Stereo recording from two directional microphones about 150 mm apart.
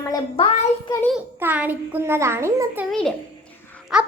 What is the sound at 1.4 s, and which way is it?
A child's voice, 10° right (ahead or behind).